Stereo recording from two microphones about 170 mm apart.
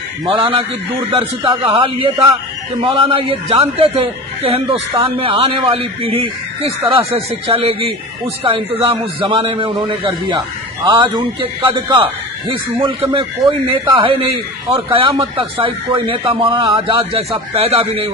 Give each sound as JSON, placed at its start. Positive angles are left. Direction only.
{"t": 0.2, "sound": "a man's voice", "side_deg": -35}